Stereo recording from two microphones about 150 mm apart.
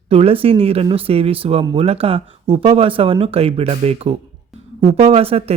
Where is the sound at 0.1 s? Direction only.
40° right (ahead or behind).